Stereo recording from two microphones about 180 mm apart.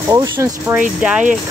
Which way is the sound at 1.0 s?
5° right (ahead or behind).